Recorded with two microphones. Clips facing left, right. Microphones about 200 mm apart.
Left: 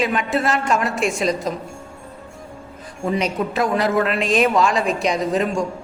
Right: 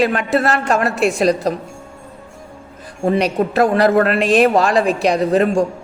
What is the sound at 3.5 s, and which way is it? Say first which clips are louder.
A man's voice: right 6 dB; 60° right (ahead or behind).